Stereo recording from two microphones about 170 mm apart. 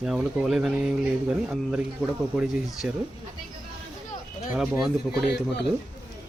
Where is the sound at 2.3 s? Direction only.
Centre (ahead or behind).